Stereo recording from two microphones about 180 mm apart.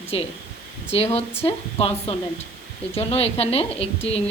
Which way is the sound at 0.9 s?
35° left (ahead or behind).